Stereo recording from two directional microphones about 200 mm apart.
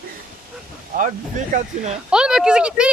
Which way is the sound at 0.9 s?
40° right (ahead or behind).